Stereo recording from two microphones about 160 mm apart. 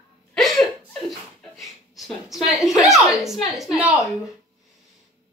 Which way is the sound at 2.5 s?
Centre (ahead or behind).